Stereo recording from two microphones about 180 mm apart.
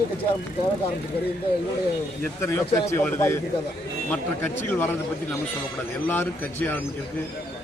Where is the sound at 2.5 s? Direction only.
15° left (ahead or behind).